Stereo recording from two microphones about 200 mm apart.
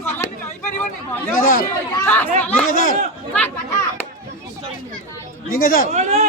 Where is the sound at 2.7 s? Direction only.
45° left (ahead or behind).